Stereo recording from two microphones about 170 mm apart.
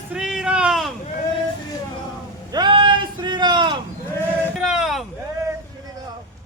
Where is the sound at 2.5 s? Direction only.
25° right (ahead or behind).